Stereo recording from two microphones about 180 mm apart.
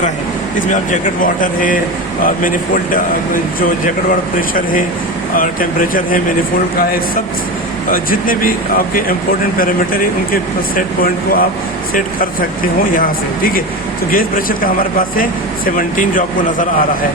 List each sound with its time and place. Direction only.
0.7 s speech: 45° left (ahead or behind)
7.9 s speech: 50° left (ahead or behind)
12.9 s speech: 50° left (ahead or behind)